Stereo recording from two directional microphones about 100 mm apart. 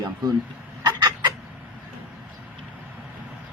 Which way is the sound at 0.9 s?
45° right (ahead or behind).